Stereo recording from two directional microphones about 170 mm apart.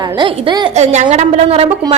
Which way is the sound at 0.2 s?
25° right (ahead or behind).